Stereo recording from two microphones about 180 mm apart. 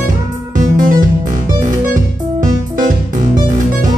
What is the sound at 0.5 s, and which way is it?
Music, 45° right (ahead or behind).